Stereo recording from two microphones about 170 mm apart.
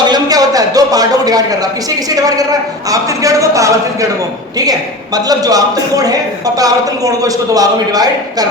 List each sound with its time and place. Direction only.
0.0 s a man's voice: 25° right (ahead or behind)